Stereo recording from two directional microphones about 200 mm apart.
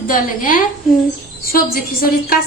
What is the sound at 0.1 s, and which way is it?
A woman's voice, 45° left (ahead or behind).